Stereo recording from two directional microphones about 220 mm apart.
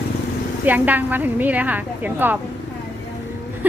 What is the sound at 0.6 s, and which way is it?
A woman's voice, 10° right (ahead or behind).